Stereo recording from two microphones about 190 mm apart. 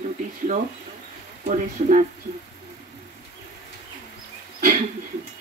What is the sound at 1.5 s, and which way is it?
Speech, 40° right (ahead or behind).